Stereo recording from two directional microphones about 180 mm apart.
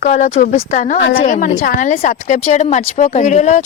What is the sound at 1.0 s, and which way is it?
Speech, 90° left.